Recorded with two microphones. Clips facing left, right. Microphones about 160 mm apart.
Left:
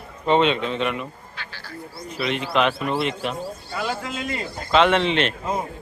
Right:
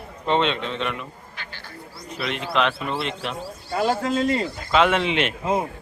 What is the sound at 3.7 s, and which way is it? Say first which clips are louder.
Speech: right 8 dB; 40° right (ahead or behind).